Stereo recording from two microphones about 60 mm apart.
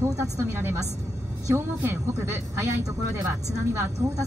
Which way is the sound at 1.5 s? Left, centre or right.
Right.